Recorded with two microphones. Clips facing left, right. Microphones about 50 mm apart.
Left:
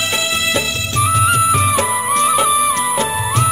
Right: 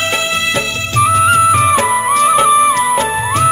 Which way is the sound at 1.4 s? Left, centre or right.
Right.